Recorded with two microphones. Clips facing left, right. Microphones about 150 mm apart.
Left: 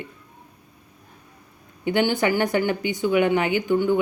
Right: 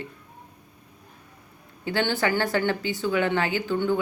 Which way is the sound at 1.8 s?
15° left (ahead or behind).